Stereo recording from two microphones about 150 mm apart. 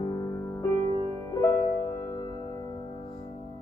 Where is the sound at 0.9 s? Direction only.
40° right (ahead or behind).